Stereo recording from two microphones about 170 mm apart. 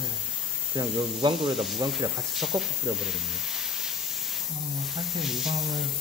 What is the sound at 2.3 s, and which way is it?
Speech, centre (ahead or behind).